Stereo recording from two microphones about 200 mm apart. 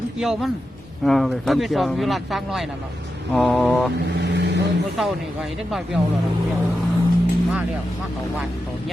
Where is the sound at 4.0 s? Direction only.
55° right (ahead or behind).